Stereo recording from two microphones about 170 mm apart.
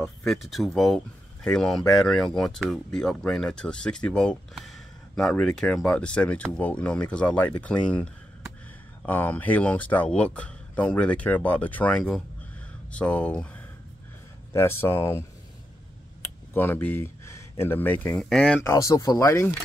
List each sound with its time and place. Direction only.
0.3 s speech: centre (ahead or behind)
16.5 s speech: 10° left (ahead or behind)
18.6 s speech: 20° left (ahead or behind)